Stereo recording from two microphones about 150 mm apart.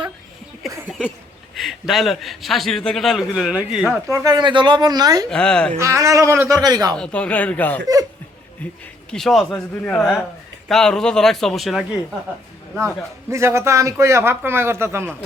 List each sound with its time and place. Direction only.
1.5 s a man's voice: centre (ahead or behind)
3.9 s speech: 20° right (ahead or behind)
5.3 s a man's voice: 5° left (ahead or behind)
5.7 s speech: 20° right (ahead or behind)
6.9 s speech: 5° left (ahead or behind)
9.0 s a man's voice: centre (ahead or behind)
13.3 s a man's voice: 20° right (ahead or behind)